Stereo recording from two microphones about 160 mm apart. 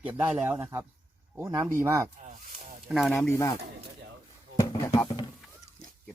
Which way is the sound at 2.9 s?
Centre (ahead or behind).